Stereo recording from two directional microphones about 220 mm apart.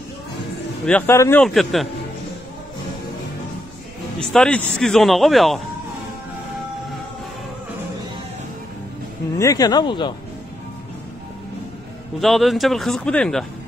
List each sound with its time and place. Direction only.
0.8 s speech: 10° left (ahead or behind)
1.4 s speech: centre (ahead or behind)
4.2 s speech: 5° left (ahead or behind)
9.4 s speech: 15° left (ahead or behind)
12.2 s speech: centre (ahead or behind)